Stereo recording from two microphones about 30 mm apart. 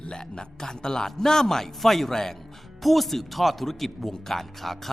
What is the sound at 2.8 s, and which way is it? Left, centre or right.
Speech, centre.